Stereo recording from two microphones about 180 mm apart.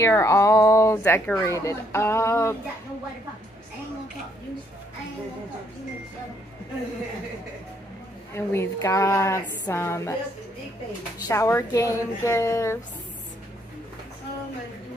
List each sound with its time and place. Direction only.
0.0 s a woman's voice: 15° left (ahead or behind)
8.4 s a woman's voice: 15° left (ahead or behind)
11.2 s a woman's voice: 15° left (ahead or behind)